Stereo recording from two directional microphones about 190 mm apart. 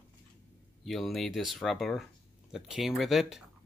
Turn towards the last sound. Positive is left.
turn(degrees=0)  # may be behind; listen again after turning